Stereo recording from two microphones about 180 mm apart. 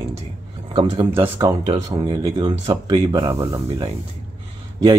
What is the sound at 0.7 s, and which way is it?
Speech, 25° right (ahead or behind).